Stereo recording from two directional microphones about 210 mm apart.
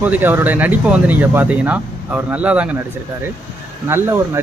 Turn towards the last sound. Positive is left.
turn(degrees=-10)  # may be behind; listen again after turning